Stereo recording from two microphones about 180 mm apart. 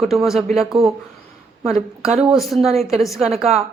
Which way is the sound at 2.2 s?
Centre (ahead or behind).